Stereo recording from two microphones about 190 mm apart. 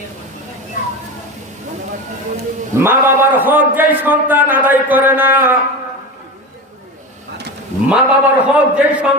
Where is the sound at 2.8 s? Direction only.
10° right (ahead or behind).